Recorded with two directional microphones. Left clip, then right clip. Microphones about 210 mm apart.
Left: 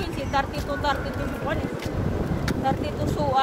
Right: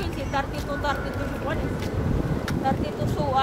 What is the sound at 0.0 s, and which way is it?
Speech, 15° left (ahead or behind).